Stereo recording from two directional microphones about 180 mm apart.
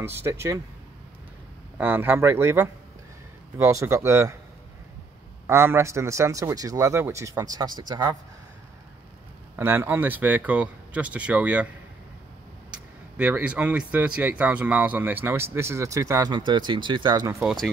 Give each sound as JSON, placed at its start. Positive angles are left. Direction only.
{"t": 0.0, "sound": "speech", "side_deg": -15}
{"t": 1.8, "sound": "speech", "side_deg": -10}
{"t": 5.5, "sound": "speech", "side_deg": -15}
{"t": 9.6, "sound": "speech", "side_deg": -10}
{"t": 12.7, "sound": "speech", "side_deg": -5}
{"t": 17.4, "sound": "speech", "side_deg": 0}